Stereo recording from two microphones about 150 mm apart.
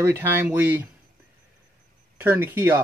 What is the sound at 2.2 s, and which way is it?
Speech, 15° right (ahead or behind).